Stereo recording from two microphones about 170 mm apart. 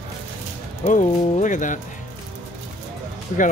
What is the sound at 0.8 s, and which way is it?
Speech, 50° left (ahead or behind).